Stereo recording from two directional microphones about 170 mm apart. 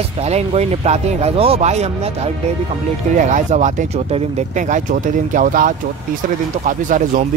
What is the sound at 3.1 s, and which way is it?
A man's voice, 45° right (ahead or behind).